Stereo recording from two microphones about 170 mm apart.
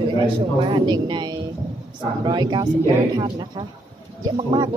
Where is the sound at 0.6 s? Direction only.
25° right (ahead or behind).